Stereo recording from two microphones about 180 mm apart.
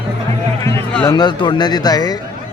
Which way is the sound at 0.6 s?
15° left (ahead or behind).